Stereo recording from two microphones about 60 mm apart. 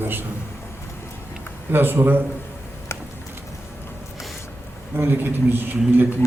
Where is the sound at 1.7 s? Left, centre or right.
Right.